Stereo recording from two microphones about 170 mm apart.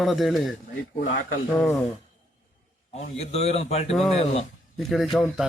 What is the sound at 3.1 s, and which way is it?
Speech, 40° left (ahead or behind).